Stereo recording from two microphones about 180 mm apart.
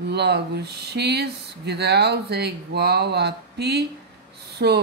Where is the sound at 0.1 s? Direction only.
65° right (ahead or behind).